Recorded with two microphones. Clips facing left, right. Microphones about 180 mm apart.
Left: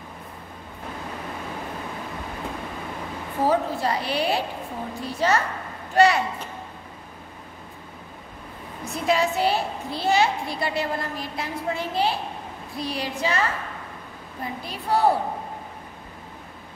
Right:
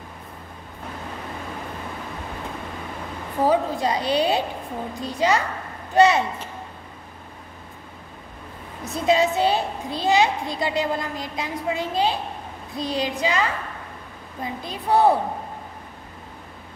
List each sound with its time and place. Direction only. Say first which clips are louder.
3.4 s a woman's voice: right 2 dB; 15° right (ahead or behind)
8.9 s a woman's voice: right 3 dB; 20° right (ahead or behind)